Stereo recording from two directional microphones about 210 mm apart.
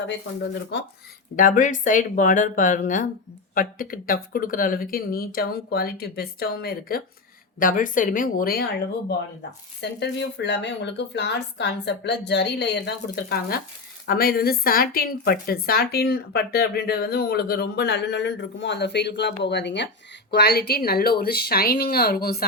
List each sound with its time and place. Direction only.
0.7 s a woman's voice: 55° left (ahead or behind)
1.4 s a woman's voice: 40° left (ahead or behind)
9.8 s a woman's voice: 55° left (ahead or behind)